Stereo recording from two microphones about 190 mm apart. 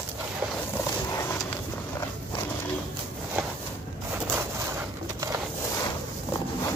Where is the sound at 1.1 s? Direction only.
15° left (ahead or behind).